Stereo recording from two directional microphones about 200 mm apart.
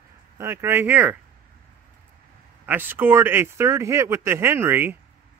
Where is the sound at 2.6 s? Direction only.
10° right (ahead or behind).